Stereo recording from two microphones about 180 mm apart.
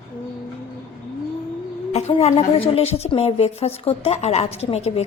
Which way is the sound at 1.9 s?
35° left (ahead or behind).